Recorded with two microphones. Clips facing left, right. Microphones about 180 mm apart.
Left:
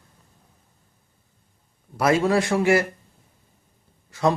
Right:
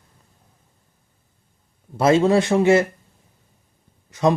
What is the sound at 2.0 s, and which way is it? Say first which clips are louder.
Speech: right 4 dB; 25° right (ahead or behind).